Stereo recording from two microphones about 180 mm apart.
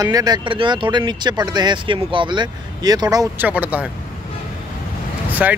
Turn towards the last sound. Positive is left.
turn(degrees=-5)  # may be behind; listen again after turning